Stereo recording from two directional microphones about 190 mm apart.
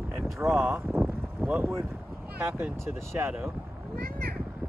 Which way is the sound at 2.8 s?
10° right (ahead or behind).